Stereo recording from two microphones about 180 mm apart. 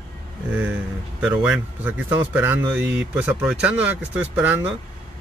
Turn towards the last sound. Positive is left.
turn(degrees=-10)  # may be behind; listen again after turning